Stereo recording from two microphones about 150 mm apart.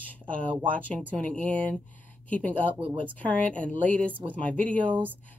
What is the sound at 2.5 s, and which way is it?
Speech, 35° right (ahead or behind).